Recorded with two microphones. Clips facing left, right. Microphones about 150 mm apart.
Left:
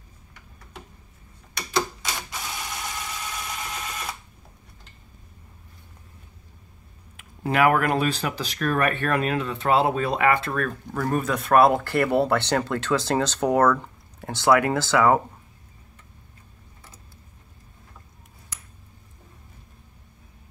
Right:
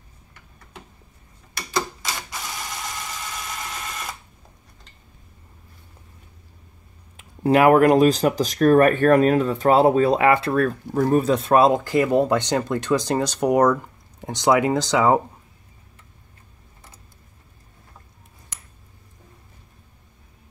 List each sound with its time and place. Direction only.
7.2 s speech: 35° right (ahead or behind); by 15.2 s 20° right (ahead or behind)